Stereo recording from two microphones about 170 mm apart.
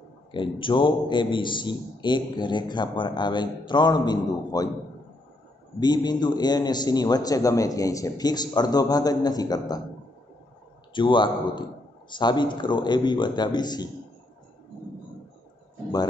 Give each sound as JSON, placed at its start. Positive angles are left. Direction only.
{"t": 0.3, "sound": "a man's voice", "side_deg": 30}
{"t": 5.8, "sound": "a man's voice", "side_deg": 25}
{"t": 10.9, "sound": "a man's voice", "side_deg": 30}